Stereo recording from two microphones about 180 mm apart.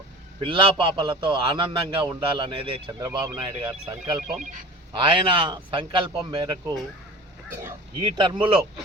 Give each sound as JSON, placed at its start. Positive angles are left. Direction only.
{"t": 0.4, "sound": "a man's voice", "side_deg": -30}
{"t": 7.5, "sound": "speech", "side_deg": -10}
{"t": 8.0, "sound": "a man's voice", "side_deg": -25}